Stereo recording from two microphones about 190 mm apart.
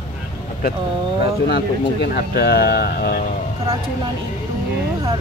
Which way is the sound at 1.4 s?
60° left (ahead or behind).